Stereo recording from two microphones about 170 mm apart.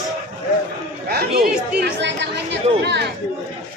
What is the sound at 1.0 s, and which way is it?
Chatter, 65° right (ahead or behind).